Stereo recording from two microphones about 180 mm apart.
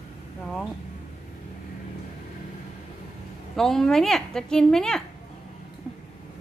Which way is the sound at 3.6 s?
5° left (ahead or behind).